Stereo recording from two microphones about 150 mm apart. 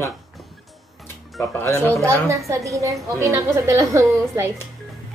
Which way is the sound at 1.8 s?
20° right (ahead or behind).